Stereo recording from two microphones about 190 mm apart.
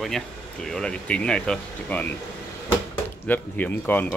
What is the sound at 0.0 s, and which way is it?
Speech, centre (ahead or behind).